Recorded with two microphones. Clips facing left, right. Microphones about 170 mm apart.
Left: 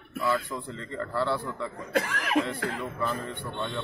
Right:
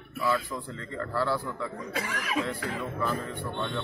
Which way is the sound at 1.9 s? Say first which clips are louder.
Left 6 dB; 60° left (ahead or behind).